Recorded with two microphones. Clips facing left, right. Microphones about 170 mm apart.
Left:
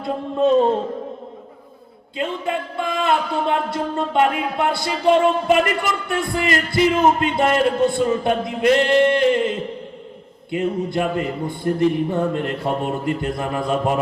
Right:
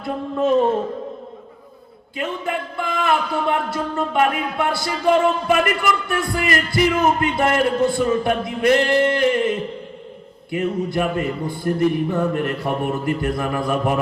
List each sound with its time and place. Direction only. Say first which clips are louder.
0.0 s music: left 2 dB; 25° left (ahead or behind)
2.1 s music: left 1 dB; 25° left (ahead or behind)